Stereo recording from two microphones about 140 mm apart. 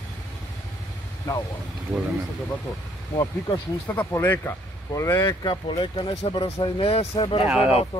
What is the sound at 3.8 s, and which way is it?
Speech, 15° left (ahead or behind).